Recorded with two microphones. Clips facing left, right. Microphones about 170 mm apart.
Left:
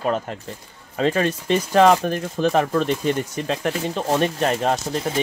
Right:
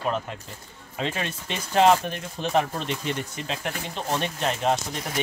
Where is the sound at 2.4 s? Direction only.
45° left (ahead or behind).